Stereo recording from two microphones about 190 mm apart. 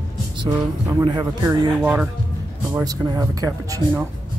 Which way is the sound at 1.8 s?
10° right (ahead or behind).